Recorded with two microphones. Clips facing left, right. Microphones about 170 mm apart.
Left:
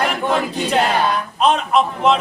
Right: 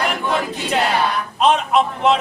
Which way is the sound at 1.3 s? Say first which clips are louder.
Right 1 dB; centre (ahead or behind).